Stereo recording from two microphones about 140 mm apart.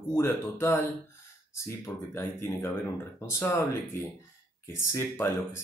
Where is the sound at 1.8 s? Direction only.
20° left (ahead or behind).